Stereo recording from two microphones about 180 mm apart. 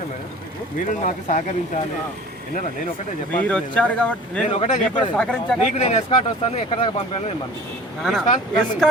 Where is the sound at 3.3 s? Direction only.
10° left (ahead or behind).